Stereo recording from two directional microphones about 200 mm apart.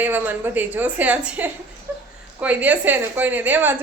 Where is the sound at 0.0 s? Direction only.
10° right (ahead or behind).